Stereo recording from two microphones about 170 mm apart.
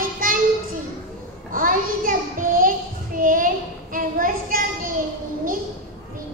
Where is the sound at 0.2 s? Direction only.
55° right (ahead or behind).